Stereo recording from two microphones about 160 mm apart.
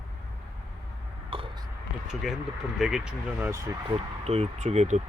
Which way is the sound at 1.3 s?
30° right (ahead or behind).